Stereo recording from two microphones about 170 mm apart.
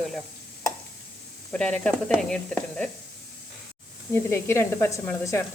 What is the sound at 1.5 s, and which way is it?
Speech, 10° left (ahead or behind).